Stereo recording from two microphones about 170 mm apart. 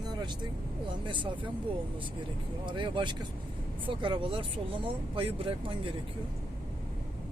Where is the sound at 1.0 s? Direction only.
30° right (ahead or behind).